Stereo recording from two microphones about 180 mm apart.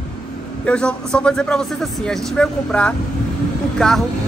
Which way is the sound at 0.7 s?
5° left (ahead or behind).